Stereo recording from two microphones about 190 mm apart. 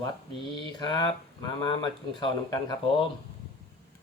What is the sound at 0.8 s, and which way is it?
Speech, 20° left (ahead or behind).